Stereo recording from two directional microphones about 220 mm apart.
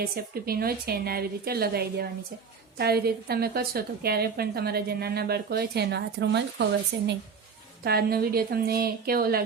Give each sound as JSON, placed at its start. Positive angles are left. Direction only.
{"t": 0.0, "sound": "a woman's voice", "side_deg": -45}
{"t": 7.9, "sound": "a woman's voice", "side_deg": -45}